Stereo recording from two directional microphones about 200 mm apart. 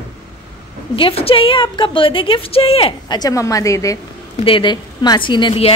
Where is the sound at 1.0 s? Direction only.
30° left (ahead or behind).